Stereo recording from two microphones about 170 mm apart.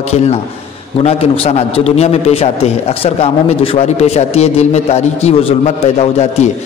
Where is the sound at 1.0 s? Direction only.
35° left (ahead or behind).